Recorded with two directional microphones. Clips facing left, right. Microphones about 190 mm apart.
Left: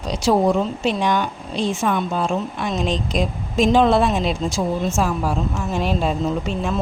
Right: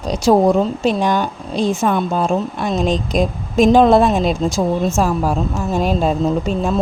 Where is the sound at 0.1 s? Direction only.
45° right (ahead or behind).